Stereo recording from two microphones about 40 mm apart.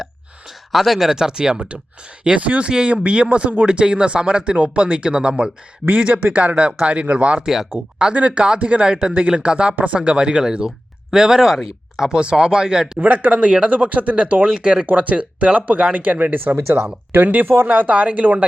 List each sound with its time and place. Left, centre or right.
0.7 s speech: centre; by 7.4 s right
7.4 s speech: centre
8.1 s speech: right; by 12.1 s centre
12.1 s speech: right
13.0 s speech: right
16.6 s speech: right
17.4 s speech: right
17.7 s speech: right